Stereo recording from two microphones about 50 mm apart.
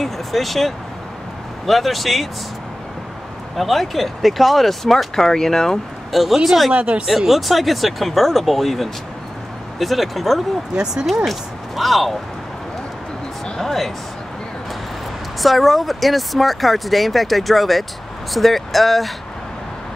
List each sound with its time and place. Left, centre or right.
0.0 s speech: centre
3.5 s speech: centre
6.7 s speech: right
7.1 s speech: centre
13.6 s speech: centre
15.4 s speech: centre